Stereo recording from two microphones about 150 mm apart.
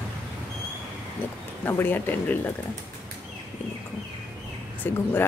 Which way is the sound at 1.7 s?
15° left (ahead or behind).